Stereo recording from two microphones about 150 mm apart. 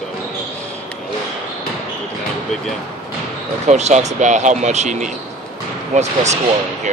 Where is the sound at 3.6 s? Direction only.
50° right (ahead or behind).